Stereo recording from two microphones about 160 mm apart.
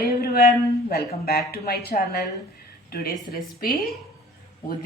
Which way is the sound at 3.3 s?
70° left (ahead or behind).